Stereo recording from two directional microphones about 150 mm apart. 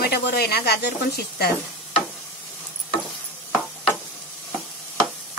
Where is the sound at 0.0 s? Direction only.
90° left.